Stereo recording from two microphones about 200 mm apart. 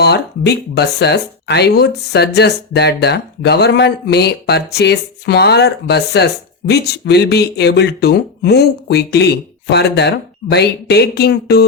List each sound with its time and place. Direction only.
0.0 s speech: 55° left (ahead or behind)